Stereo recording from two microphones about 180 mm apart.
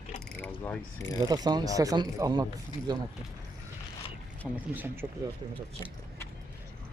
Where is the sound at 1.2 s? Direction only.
20° right (ahead or behind).